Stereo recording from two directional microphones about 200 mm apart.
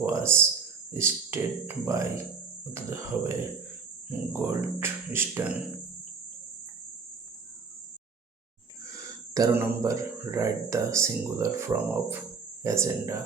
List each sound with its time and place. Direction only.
0.0 s speech: 15° right (ahead or behind)
9.3 s speech: 15° right (ahead or behind)